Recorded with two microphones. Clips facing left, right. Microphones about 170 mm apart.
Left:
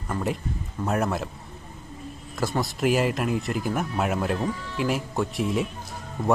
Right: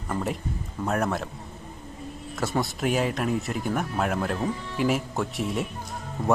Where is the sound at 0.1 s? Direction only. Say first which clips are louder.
Left 1 dB; centre (ahead or behind).